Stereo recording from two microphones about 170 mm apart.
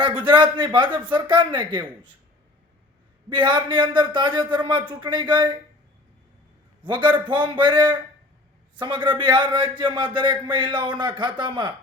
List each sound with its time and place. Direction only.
0.0 s a man's voice: 30° right (ahead or behind)
3.2 s a man's voice: 25° right (ahead or behind)
6.8 s a man's voice: 25° right (ahead or behind)